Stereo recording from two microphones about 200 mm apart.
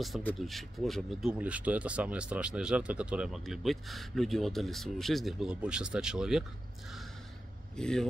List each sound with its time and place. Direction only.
0.0 s speech: 5° left (ahead or behind)
7.7 s speech: 5° left (ahead or behind)